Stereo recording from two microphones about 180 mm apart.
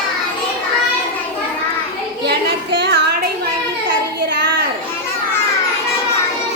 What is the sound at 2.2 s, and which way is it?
Music, 70° right (ahead or behind).